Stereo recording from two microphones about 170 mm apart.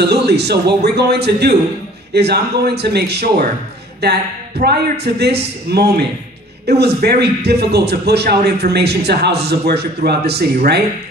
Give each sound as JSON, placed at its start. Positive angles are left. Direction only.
{"t": 0.0, "sound": "a man's voice", "side_deg": -75}